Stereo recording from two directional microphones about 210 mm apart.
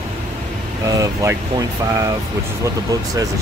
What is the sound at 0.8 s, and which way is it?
Speech, 15° right (ahead or behind).